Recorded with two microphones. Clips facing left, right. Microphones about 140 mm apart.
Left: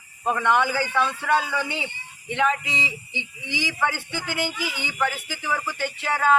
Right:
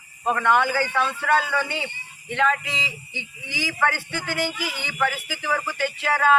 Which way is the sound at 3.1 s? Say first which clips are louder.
Left 2 dB; 50° right (ahead or behind).